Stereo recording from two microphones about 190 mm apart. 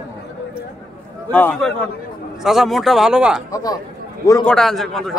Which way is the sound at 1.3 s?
10° left (ahead or behind).